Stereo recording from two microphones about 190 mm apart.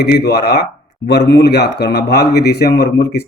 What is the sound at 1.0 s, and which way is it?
Speech, 60° left (ahead or behind).